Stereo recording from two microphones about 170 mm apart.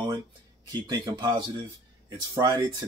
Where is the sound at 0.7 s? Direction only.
25° right (ahead or behind).